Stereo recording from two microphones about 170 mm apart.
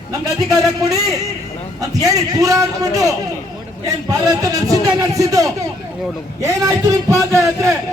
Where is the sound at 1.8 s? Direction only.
20° right (ahead or behind).